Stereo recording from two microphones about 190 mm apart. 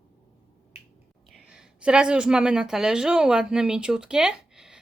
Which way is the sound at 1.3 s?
5° right (ahead or behind).